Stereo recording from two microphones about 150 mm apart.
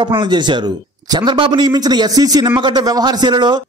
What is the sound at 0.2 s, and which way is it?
A man's voice, 30° right (ahead or behind).